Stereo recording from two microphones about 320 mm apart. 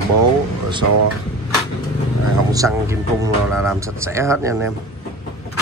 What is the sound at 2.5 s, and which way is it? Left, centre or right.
Speech, centre.